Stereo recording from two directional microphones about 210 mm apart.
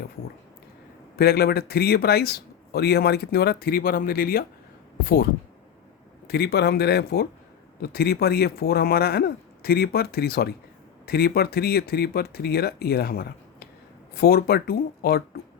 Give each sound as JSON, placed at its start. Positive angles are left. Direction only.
{"t": 1.1, "sound": "speech", "side_deg": 50}